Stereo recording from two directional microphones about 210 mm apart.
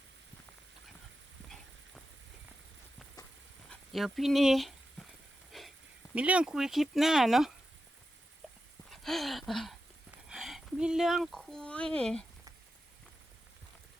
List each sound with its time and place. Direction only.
3.7 s dog: centre (ahead or behind)
5.5 s wheeze: centre (ahead or behind)
6.1 s speech: 5° right (ahead or behind)
8.9 s a sound: centre (ahead or behind)
10.2 s speech: centre (ahead or behind)